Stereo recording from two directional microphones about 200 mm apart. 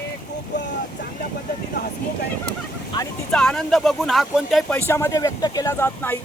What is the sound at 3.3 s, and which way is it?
Speech, 5° left (ahead or behind).